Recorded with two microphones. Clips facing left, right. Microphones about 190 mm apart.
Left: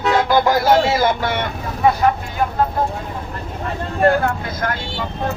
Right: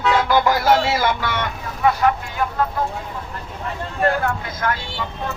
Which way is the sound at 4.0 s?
40° left (ahead or behind).